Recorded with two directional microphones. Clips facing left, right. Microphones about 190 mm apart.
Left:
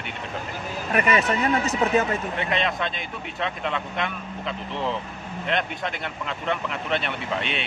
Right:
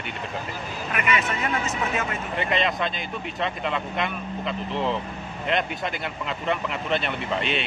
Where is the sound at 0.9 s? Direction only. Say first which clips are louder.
Left 5 dB; 35° left (ahead or behind).